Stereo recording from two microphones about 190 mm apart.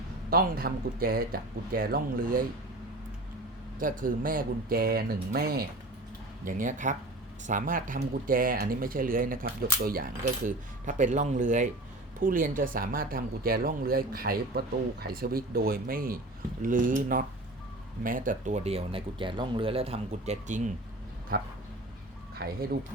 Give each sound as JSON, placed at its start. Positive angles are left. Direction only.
{"t": 0.3, "sound": "speech", "side_deg": -50}
{"t": 3.8, "sound": "speech", "side_deg": -45}
{"t": 22.4, "sound": "speech", "side_deg": -60}